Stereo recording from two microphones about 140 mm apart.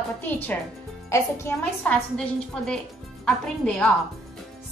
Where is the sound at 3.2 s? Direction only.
5° left (ahead or behind).